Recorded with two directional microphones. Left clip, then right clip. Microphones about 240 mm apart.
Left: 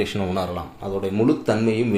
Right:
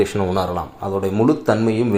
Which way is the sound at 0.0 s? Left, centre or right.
Centre.